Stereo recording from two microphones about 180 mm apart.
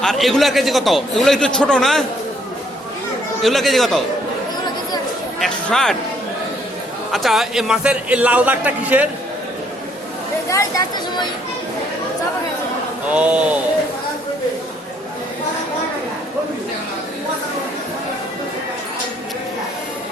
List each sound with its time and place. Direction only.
0.0 s a man's voice: centre (ahead or behind)
3.4 s a man's voice: centre (ahead or behind)
5.4 s speech: centre (ahead or behind)
7.1 s a man's voice: centre (ahead or behind)
10.5 s speech: 20° left (ahead or behind)
13.1 s a man's voice: 5° right (ahead or behind)